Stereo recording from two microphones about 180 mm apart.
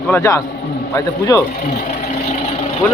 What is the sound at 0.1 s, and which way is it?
Speech, 15° left (ahead or behind).